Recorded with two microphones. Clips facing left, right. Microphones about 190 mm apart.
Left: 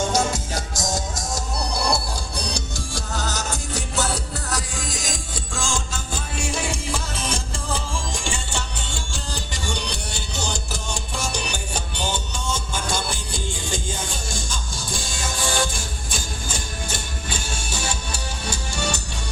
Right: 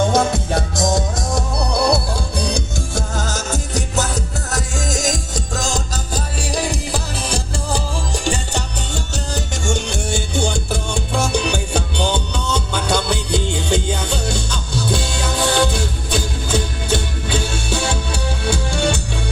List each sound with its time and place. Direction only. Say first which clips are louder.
0.1 s music: right 6 dB; 60° right (ahead or behind)